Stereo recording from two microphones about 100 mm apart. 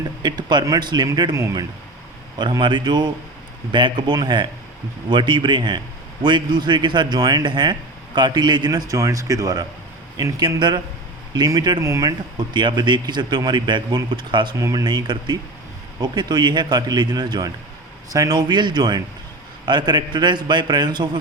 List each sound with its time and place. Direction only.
0.2 s a man's voice: 45° right (ahead or behind)
2.4 s a man's voice: 50° right (ahead or behind); by 12.1 s 30° right (ahead or behind)
12.4 s a man's voice: 50° right (ahead or behind)
14.6 s a man's voice: 35° right (ahead or behind)